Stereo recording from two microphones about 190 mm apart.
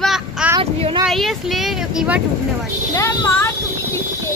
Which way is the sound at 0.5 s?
25° right (ahead or behind).